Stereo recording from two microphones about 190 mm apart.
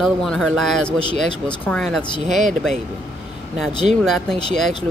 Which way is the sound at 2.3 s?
40° right (ahead or behind).